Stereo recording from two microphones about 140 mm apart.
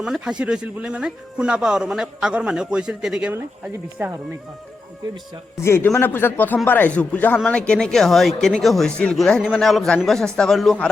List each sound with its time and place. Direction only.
0.0 s speech: 5° right (ahead or behind)
5.5 s speech: 20° left (ahead or behind); by 10.8 s centre (ahead or behind)